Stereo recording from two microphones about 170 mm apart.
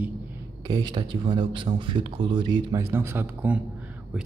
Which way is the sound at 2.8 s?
15° right (ahead or behind).